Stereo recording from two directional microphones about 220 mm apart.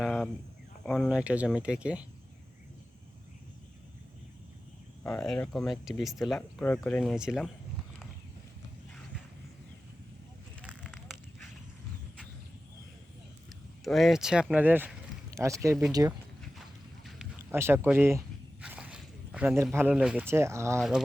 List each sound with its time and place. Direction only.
0.0 s cricket: centre (ahead or behind)
0.9 s speech: centre (ahead or behind)
5.0 s speech: 5° left (ahead or behind)
10.6 s crackle: 5° right (ahead or behind)
13.8 s speech: centre (ahead or behind); by 16.1 s 15° right (ahead or behind)
17.2 s speech: 10° right (ahead or behind)
20.7 s speech: centre (ahead or behind)